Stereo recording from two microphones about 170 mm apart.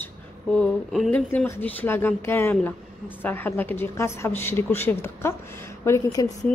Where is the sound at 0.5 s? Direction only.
5° left (ahead or behind); by 6.3 s 20° left (ahead or behind).